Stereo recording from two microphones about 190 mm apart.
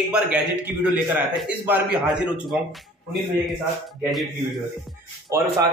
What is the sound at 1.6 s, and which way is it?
A man's voice, 5° right (ahead or behind).